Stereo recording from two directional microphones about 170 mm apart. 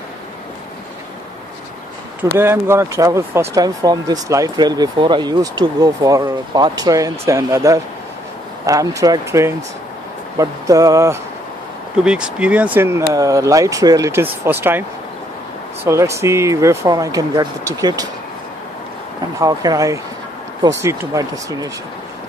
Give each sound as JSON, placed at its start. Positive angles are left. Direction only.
{"t": 2.2, "sound": "speech", "side_deg": -15}
{"t": 12.0, "sound": "speech", "side_deg": -5}
{"t": 19.4, "sound": "speech", "side_deg": -20}